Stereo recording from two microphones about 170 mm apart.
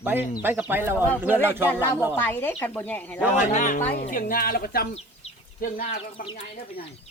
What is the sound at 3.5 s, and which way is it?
Speech, 45° left (ahead or behind).